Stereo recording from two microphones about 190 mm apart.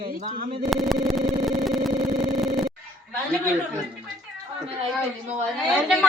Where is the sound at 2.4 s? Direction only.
Centre (ahead or behind).